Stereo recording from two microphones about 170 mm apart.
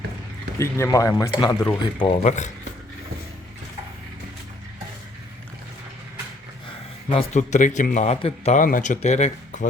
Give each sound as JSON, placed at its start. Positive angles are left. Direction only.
{"t": 0.6, "sound": "speech", "side_deg": 15}
{"t": 2.1, "sound": "speech", "side_deg": 40}
{"t": 7.1, "sound": "speech", "side_deg": 40}
{"t": 8.6, "sound": "speech", "side_deg": 50}